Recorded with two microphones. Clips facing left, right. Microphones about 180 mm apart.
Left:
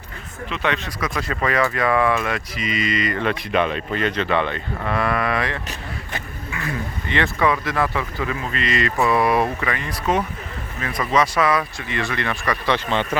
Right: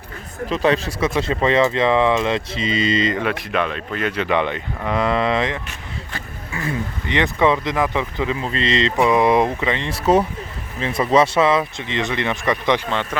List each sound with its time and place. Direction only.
0.4 s speech: 35° right (ahead or behind)
3.5 s speech: centre (ahead or behind); by 5.5 s 20° right (ahead or behind)
6.6 s speech: 20° right (ahead or behind)